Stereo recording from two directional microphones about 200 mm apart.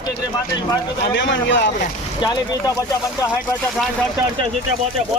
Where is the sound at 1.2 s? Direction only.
65° left (ahead or behind).